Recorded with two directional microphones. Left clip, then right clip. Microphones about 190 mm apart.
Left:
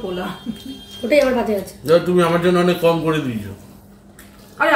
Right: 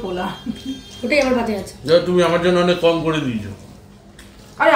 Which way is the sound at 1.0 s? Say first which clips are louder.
Left 2 dB; 5° left (ahead or behind).